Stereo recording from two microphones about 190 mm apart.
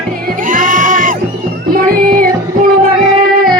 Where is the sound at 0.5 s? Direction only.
45° right (ahead or behind).